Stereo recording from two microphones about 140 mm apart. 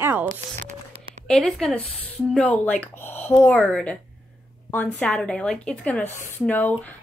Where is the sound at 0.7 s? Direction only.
55° right (ahead or behind).